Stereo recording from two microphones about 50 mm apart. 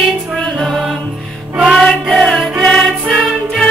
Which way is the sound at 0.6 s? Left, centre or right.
Centre.